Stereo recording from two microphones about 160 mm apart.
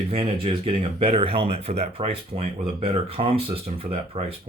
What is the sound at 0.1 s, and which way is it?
Speech, 40° right (ahead or behind).